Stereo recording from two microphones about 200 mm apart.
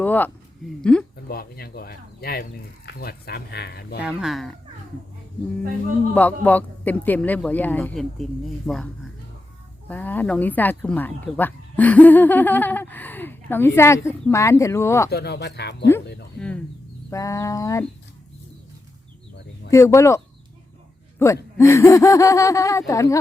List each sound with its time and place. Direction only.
0.0 s speech: 10° left (ahead or behind)
1.1 s speech: 50° left (ahead or behind)
4.0 s speech: centre (ahead or behind)
6.1 s speech: 10° left (ahead or behind)
9.9 s speech: 10° left (ahead or behind)
15.1 s speech: 55° left (ahead or behind)
16.4 s speech: 5° left (ahead or behind)
19.7 s speech: 15° left (ahead or behind)